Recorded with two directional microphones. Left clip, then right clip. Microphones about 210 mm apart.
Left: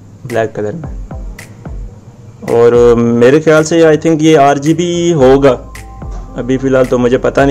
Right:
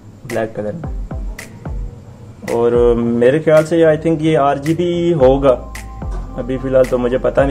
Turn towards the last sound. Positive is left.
turn(degrees=50)  # may be behind; listen again after turning